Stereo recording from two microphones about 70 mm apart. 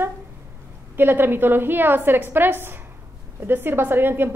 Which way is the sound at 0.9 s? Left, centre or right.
Right.